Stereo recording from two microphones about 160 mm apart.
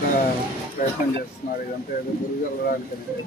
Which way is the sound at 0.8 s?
60° left (ahead or behind).